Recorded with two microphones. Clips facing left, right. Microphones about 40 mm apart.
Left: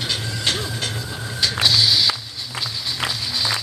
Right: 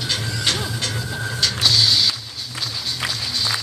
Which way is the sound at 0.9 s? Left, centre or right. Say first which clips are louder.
Right 2 dB; centre.